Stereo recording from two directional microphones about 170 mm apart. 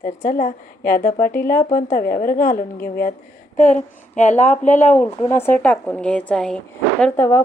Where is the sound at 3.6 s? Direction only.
45° left (ahead or behind).